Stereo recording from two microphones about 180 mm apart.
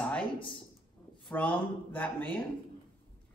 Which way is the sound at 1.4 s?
10° left (ahead or behind).